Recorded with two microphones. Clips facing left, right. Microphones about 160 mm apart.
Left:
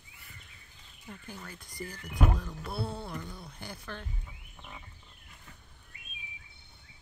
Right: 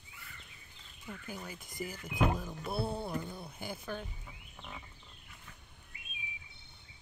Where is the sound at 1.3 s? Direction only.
15° right (ahead or behind).